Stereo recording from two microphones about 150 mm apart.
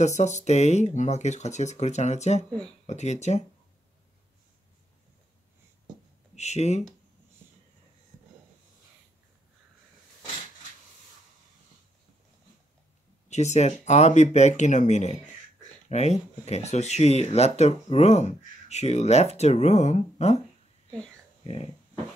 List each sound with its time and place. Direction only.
0.0 s speech: 50° left (ahead or behind)
6.3 s speech: 50° left (ahead or behind)
13.3 s speech: 50° left (ahead or behind)